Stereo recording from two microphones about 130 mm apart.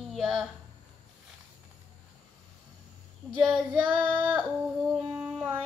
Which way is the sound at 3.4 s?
5° right (ahead or behind).